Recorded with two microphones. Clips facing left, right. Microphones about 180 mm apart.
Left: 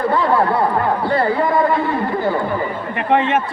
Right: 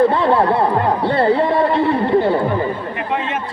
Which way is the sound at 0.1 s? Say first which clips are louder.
Right 1 dB; 25° right (ahead or behind).